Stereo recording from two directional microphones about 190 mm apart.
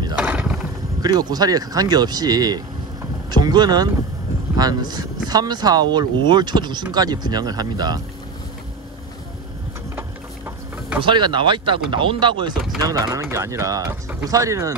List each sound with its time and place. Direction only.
0.1 s a sound: 5° right (ahead or behind)
1.0 s speech: 20° right (ahead or behind)
11.0 s speech: 25° right (ahead or behind)